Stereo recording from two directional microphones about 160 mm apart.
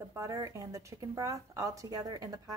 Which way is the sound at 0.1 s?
20° right (ahead or behind).